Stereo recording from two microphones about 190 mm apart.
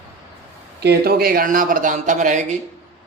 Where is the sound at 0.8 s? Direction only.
55° right (ahead or behind).